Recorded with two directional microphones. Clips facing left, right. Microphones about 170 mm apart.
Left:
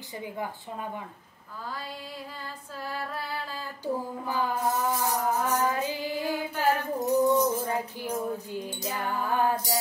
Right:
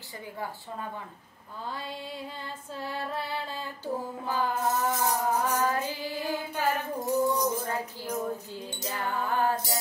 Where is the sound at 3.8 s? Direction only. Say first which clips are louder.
Left 3 dB; 15° left (ahead or behind).